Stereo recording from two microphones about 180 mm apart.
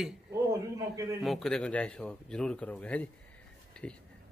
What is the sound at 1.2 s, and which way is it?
A man's voice, centre (ahead or behind).